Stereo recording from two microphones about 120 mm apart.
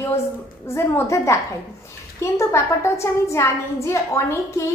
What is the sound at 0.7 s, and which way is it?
A woman's voice, 25° left (ahead or behind).